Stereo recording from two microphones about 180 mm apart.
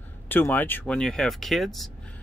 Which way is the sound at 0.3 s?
10° left (ahead or behind).